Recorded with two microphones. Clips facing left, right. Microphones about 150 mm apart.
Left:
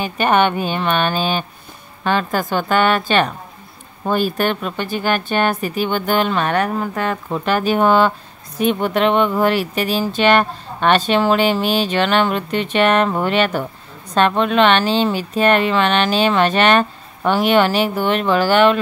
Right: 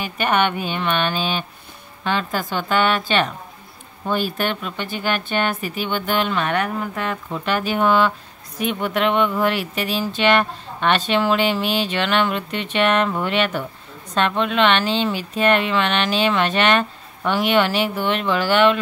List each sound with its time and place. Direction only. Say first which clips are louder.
0.0 s speech: left 4 dB; 40° left (ahead or behind)